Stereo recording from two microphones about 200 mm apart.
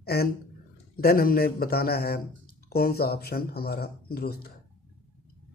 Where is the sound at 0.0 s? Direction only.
50° left (ahead or behind).